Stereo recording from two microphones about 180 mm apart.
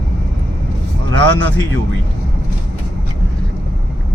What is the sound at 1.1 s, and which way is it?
Speech, 80° right.